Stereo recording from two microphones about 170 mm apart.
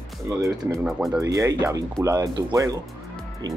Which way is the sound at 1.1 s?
20° right (ahead or behind).